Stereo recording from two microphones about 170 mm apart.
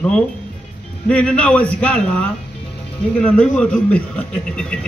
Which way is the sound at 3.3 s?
5° left (ahead or behind).